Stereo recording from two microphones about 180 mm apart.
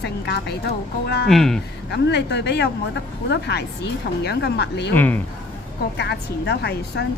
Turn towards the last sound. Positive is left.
turn(degrees=65)  # may be behind; listen again after turning